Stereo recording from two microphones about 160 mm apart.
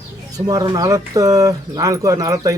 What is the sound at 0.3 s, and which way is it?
Speech, 25° right (ahead or behind).